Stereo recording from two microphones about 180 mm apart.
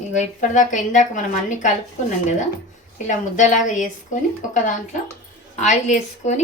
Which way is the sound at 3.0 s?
40° left (ahead or behind).